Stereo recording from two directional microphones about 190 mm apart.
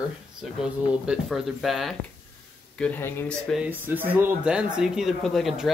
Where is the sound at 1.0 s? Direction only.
Centre (ahead or behind).